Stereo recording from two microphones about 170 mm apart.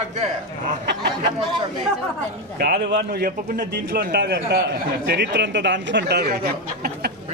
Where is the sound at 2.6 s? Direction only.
80° right; by 7.1 s 60° right (ahead or behind).